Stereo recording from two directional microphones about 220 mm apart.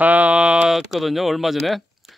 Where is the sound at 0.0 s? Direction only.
5° right (ahead or behind).